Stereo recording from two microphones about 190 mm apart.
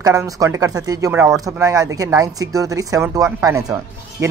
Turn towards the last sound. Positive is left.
turn(degrees=-15)  # may be behind; listen again after turning